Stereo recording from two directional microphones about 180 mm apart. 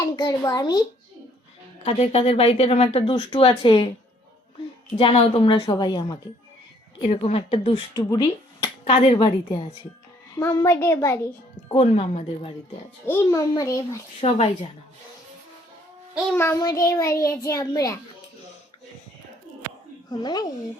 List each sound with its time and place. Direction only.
0.2 s a woman's voice: 20° left (ahead or behind)
1.8 s speech: 35° left (ahead or behind)
4.9 s a woman's voice: 30° left (ahead or behind)
7.9 s speech: 20° left (ahead or behind)
8.8 s a woman's voice: 35° left (ahead or behind)
10.3 s child singing: 15° left (ahead or behind)
11.7 s speech: 30° left (ahead or behind)
13.1 s child singing: 15° left (ahead or behind)
14.2 s speech: 30° left (ahead or behind)
16.3 s child singing: 15° left (ahead or behind)
20.1 s a woman's voice: 20° left (ahead or behind)